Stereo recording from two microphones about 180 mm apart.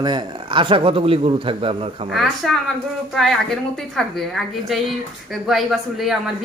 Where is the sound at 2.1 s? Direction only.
Centre (ahead or behind).